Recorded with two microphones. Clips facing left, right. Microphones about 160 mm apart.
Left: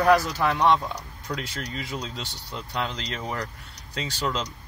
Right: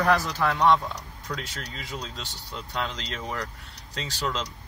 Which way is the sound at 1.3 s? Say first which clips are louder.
Left 3 dB; 5° left (ahead or behind).